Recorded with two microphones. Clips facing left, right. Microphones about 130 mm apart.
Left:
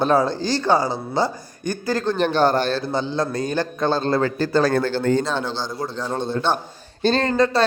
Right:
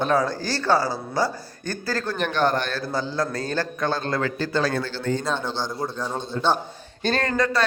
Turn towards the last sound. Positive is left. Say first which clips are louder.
# left 4 dB
turn(degrees=25)  # may be behind; listen again after turning